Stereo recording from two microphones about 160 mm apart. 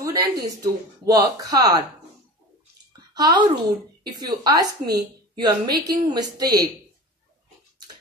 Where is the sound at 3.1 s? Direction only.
25° right (ahead or behind).